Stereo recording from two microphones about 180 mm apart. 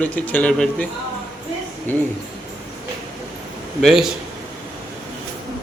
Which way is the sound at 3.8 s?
Centre (ahead or behind).